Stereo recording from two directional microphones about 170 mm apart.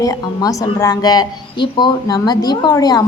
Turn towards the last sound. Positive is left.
turn(degrees=20)  # may be behind; listen again after turning